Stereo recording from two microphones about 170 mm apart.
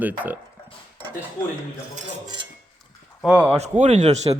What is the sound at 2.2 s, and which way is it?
Speech, 25° right (ahead or behind).